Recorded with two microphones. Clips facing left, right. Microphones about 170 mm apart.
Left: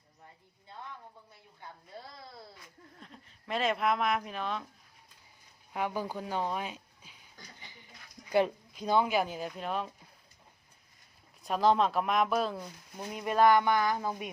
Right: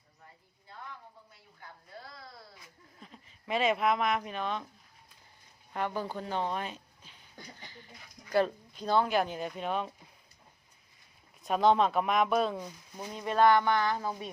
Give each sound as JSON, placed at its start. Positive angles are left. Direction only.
{"t": 2.0, "sound": "a sound", "side_deg": 20}
{"t": 3.0, "sound": "speech", "side_deg": 0}
{"t": 5.7, "sound": "speech", "side_deg": 10}
{"t": 8.3, "sound": "speech", "side_deg": 15}
{"t": 11.4, "sound": "speech", "side_deg": 0}